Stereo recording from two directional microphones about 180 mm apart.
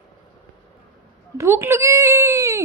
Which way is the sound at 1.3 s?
15° right (ahead or behind).